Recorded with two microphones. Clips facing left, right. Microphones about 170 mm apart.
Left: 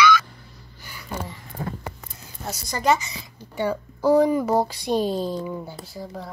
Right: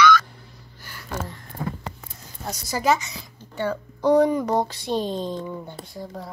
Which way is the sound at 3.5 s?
10° left (ahead or behind).